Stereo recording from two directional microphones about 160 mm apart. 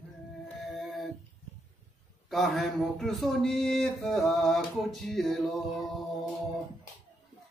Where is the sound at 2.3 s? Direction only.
Centre (ahead or behind).